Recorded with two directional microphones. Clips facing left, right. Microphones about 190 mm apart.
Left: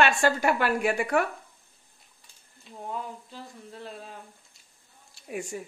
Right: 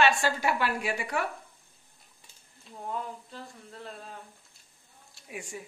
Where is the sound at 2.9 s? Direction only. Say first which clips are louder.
Even; 5° left (ahead or behind).